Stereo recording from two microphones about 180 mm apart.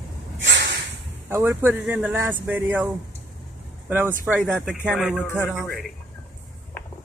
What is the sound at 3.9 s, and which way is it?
Speech, 10° right (ahead or behind).